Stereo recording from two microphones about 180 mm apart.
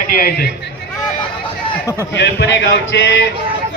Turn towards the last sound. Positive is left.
turn(degrees=90)